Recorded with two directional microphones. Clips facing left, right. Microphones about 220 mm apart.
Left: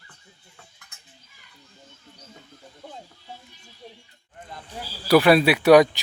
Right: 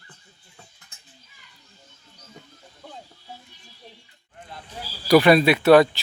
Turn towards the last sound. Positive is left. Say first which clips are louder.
# even
turn(degrees=10)  # may be behind; listen again after turning